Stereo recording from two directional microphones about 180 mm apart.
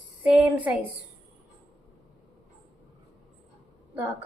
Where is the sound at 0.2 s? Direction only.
5° right (ahead or behind).